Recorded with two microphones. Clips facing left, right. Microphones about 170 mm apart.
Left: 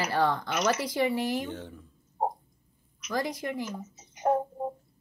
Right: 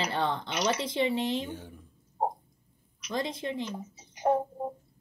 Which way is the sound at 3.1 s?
25° right (ahead or behind).